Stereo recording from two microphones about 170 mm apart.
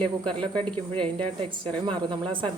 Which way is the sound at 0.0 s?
30° right (ahead or behind).